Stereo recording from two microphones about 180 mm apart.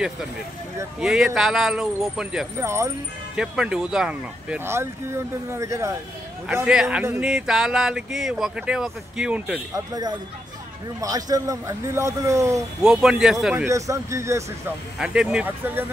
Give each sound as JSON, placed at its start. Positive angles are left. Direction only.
{"t": 1.0, "sound": "a man's voice", "side_deg": 0}
{"t": 2.6, "sound": "speech", "side_deg": -15}
{"t": 3.3, "sound": "speech", "side_deg": -5}
{"t": 6.4, "sound": "a man's voice", "side_deg": -5}
{"t": 11.0, "sound": "speech", "side_deg": -20}
{"t": 12.8, "sound": "a man's voice", "side_deg": -5}
{"t": 13.7, "sound": "speech", "side_deg": -15}
{"t": 15.0, "sound": "a man's voice", "side_deg": -5}